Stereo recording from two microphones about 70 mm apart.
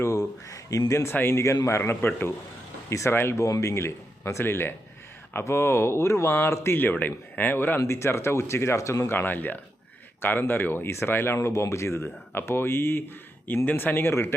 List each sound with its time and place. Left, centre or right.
0.0 s a sound: left
1.1 s a man's voice: left
2.9 s a man's voice: left
7.8 s a man's voice: left
9.1 s a man's voice: left
11.3 s a man's voice: left